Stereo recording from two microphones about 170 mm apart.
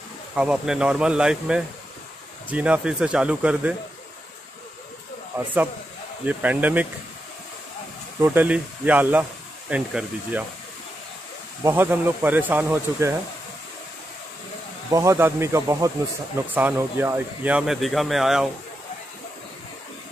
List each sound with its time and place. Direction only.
0.4 s speech: 5° right (ahead or behind)
6.2 s speech: 10° right (ahead or behind)
8.2 s speech: 10° right (ahead or behind)
11.6 s speech: 10° right (ahead or behind)
14.9 s speech: 20° right (ahead or behind); by 18.5 s centre (ahead or behind)